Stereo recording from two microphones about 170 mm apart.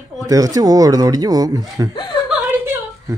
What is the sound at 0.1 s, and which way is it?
Speech, 20° right (ahead or behind).